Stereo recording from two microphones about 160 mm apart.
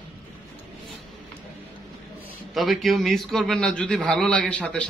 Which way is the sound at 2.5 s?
Centre (ahead or behind).